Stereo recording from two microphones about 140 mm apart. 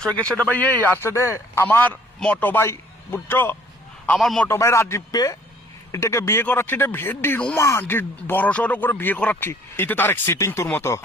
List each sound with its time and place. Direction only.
0.0 s a man's voice: 10° left (ahead or behind)
4.4 s a man's voice: 20° left (ahead or behind)